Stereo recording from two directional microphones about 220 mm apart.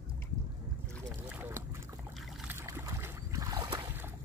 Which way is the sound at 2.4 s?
10° right (ahead or behind).